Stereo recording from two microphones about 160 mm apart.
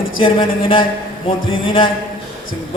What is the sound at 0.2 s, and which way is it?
A man's voice, 35° left (ahead or behind).